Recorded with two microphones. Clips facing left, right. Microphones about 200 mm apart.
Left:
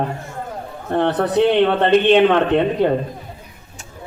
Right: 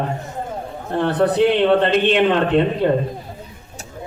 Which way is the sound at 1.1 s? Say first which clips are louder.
Right 3 dB; 60° right (ahead or behind).